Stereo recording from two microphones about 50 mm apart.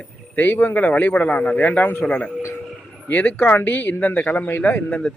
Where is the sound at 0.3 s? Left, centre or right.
Left.